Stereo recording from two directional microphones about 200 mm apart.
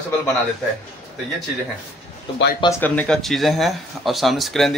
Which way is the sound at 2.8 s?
5° left (ahead or behind).